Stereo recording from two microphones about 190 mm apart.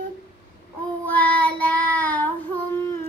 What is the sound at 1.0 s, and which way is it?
Child singing, 10° left (ahead or behind).